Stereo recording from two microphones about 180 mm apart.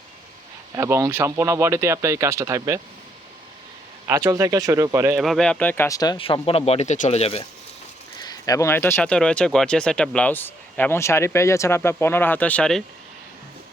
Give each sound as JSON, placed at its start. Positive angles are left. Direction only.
{"t": 0.8, "sound": "speech", "side_deg": -15}
{"t": 4.0, "sound": "speech", "side_deg": -15}
{"t": 5.1, "sound": "speech", "side_deg": 0}
{"t": 8.2, "sound": "speech", "side_deg": 20}